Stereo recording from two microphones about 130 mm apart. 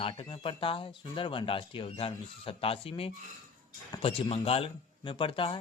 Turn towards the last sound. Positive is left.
turn(degrees=40)  # may be behind; listen again after turning